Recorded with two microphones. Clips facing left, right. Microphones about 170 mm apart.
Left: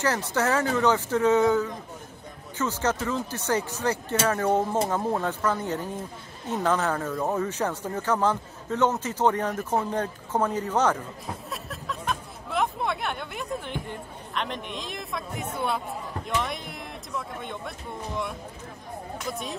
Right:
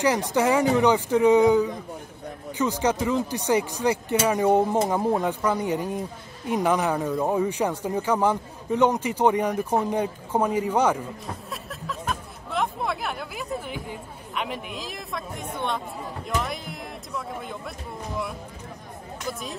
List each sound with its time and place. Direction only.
0.0 s speech: 15° right (ahead or behind)
11.2 s speech: centre (ahead or behind)